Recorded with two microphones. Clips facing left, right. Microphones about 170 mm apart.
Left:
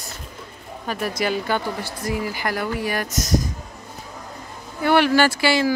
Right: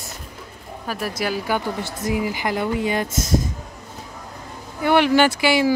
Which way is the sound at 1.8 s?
20° right (ahead or behind).